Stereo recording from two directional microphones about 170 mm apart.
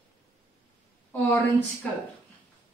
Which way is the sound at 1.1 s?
10° left (ahead or behind).